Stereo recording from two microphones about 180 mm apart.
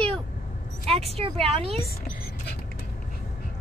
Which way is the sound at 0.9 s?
35° right (ahead or behind).